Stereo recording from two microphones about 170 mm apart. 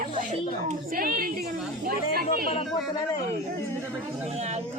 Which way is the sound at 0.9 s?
60° right (ahead or behind).